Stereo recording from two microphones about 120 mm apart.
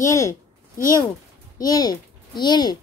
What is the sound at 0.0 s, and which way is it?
Speech, 25° left (ahead or behind).